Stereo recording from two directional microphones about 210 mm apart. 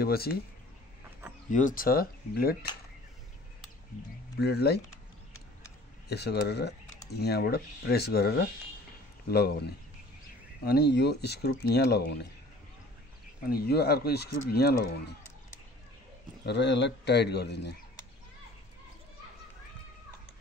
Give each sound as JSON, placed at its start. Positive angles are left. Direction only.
{"t": 0.0, "sound": "speech", "side_deg": 45}
{"t": 1.5, "sound": "speech", "side_deg": 40}
{"t": 4.4, "sound": "speech", "side_deg": 50}
{"t": 6.0, "sound": "speech", "side_deg": 50}
{"t": 13.5, "sound": "speech", "side_deg": 50}
{"t": 16.4, "sound": "speech", "side_deg": 55}